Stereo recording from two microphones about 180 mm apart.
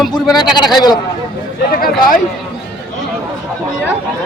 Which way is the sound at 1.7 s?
50° left (ahead or behind).